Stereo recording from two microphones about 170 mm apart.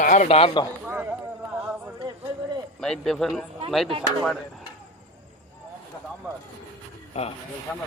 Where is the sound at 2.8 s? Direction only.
Centre (ahead or behind).